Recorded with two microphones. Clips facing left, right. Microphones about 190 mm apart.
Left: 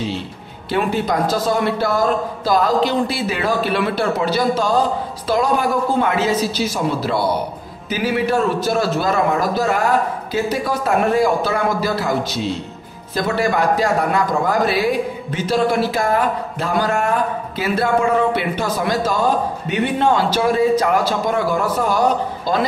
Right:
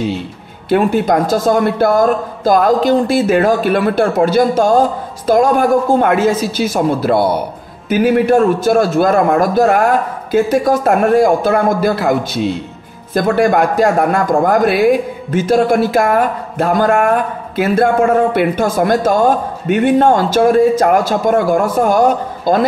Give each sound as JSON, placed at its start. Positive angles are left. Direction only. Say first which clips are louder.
{"t": 0.7, "sound": "a man's voice", "louder": "right 7 dB", "side_deg": -50}